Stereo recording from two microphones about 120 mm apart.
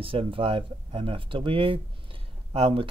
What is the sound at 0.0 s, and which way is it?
Speech, 50° right (ahead or behind).